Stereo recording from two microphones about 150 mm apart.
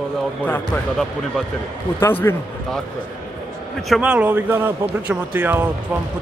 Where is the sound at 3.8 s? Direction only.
5° right (ahead or behind).